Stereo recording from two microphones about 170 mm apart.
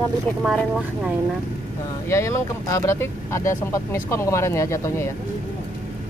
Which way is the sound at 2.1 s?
15° left (ahead or behind).